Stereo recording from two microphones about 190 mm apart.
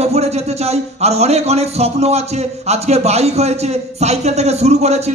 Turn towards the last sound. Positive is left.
turn(degrees=-35)  # may be behind; listen again after turning